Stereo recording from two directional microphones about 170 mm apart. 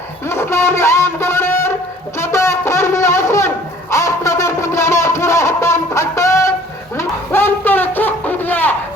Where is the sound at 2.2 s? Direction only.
15° left (ahead or behind).